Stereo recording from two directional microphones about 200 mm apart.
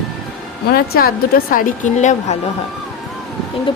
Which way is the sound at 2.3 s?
35° left (ahead or behind).